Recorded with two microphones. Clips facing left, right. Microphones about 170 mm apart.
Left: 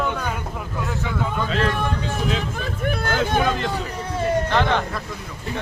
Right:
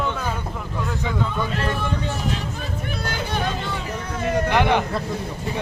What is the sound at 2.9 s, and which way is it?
Hubbub, 50° left (ahead or behind).